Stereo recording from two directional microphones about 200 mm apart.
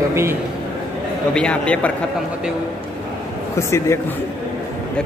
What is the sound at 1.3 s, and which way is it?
Speech, 5° left (ahead or behind).